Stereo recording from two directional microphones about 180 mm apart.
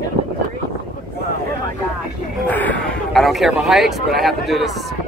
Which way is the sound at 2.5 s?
10° left (ahead or behind).